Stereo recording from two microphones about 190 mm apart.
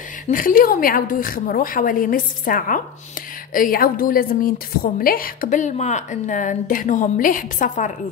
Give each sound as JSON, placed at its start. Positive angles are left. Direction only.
{"t": 0.3, "sound": "a woman's voice", "side_deg": 45}